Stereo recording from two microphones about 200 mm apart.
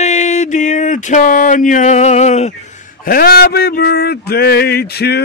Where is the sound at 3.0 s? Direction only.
45° left (ahead or behind).